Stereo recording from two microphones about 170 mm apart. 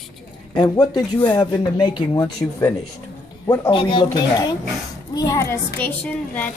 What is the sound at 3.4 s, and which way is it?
A woman's voice, 20° left (ahead or behind).